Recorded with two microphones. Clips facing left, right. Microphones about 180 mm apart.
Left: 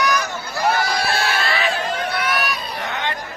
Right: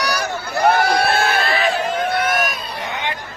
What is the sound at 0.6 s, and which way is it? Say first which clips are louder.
Crowd: right 5 dB; 55° right (ahead or behind).